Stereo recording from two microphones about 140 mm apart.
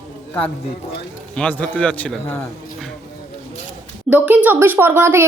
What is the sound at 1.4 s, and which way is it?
A man's voice, 10° left (ahead or behind).